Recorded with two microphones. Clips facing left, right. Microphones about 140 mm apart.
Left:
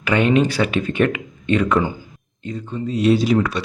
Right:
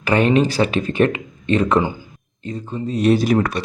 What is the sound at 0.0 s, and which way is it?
Speech, 35° right (ahead or behind).